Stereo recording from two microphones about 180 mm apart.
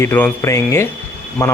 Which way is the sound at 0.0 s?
15° left (ahead or behind).